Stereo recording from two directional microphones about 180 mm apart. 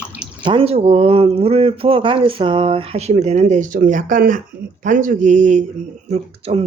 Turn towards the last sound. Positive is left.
turn(degrees=-35)  # may be behind; listen again after turning